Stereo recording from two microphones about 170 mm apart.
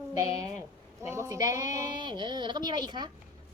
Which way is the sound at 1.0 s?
15° right (ahead or behind).